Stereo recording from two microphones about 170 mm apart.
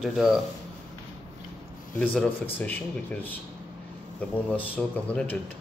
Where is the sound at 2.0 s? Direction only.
5° left (ahead or behind).